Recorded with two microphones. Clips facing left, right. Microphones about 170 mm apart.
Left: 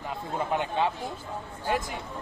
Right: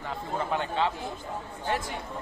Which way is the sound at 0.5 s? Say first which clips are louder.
Left 1 dB; 15° left (ahead or behind).